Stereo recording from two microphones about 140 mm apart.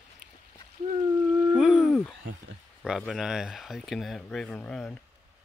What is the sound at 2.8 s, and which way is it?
Speech, 5° right (ahead or behind).